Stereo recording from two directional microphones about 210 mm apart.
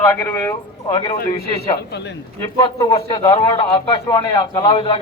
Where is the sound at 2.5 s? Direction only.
20° left (ahead or behind).